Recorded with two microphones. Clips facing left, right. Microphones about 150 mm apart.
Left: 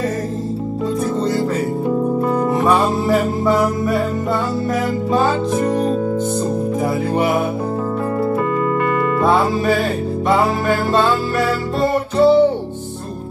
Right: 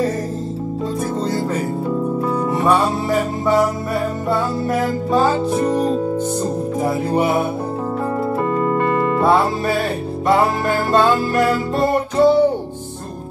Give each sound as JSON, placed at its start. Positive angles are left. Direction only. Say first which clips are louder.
{"t": 8.5, "sound": "music", "louder": "even", "side_deg": -30}
{"t": 10.9, "sound": "music", "louder": "right 4 dB", "side_deg": -10}